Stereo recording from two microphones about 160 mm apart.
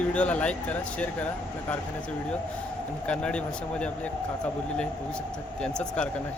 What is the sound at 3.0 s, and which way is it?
Speech, 5° left (ahead or behind).